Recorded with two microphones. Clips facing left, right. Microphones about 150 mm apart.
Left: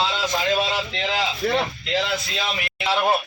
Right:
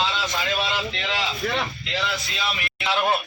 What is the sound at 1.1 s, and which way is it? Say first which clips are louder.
Speech: left 5 dB; 35° left (ahead or behind).